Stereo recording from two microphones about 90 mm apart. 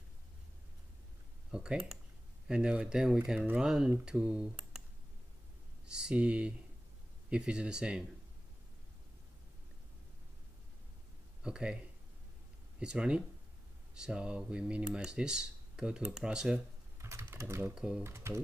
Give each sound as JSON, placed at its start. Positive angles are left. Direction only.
{"t": 1.5, "sound": "speech", "side_deg": -10}
{"t": 5.9, "sound": "speech", "side_deg": -10}
{"t": 11.4, "sound": "speech", "side_deg": -10}
{"t": 17.0, "sound": "speech", "side_deg": -30}
{"t": 17.7, "sound": "speech", "side_deg": -10}
{"t": 18.0, "sound": "speech", "side_deg": -30}